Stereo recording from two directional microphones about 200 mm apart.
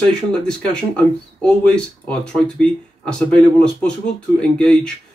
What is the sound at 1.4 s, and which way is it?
Speech, 5° left (ahead or behind).